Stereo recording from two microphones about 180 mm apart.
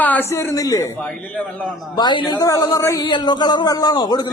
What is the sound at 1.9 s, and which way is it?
A man's voice, 25° left (ahead or behind).